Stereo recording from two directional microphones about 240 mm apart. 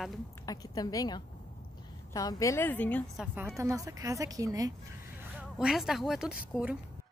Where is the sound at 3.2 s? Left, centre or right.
Centre.